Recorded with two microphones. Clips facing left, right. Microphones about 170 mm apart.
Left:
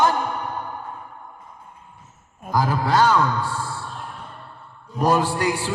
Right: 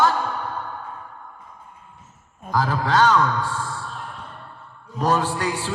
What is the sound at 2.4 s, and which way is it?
A man's voice, 10° left (ahead or behind).